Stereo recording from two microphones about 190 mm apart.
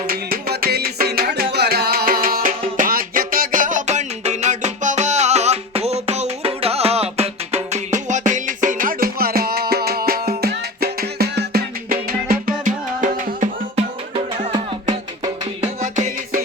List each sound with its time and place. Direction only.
0.1 s music: 50° right (ahead or behind)
14.5 s music: 20° right (ahead or behind)
15.6 s music: 40° right (ahead or behind)